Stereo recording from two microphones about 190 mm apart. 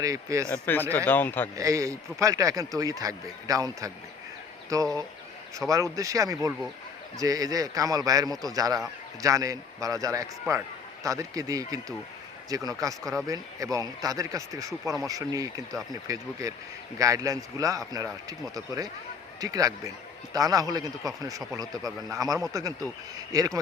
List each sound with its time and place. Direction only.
0.0 s speech: 15° right (ahead or behind)
0.5 s speech: 10° left (ahead or behind)
1.5 s a man's voice: 15° right (ahead or behind)